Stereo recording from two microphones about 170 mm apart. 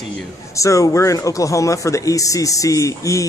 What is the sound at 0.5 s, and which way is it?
A man's voice, 20° left (ahead or behind).